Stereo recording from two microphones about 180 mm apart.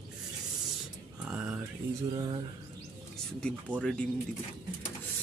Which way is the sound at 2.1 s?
25° right (ahead or behind).